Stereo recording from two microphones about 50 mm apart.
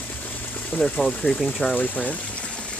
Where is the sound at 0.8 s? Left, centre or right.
Centre.